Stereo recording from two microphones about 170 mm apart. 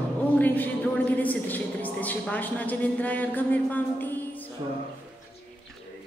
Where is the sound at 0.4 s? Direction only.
10° left (ahead or behind).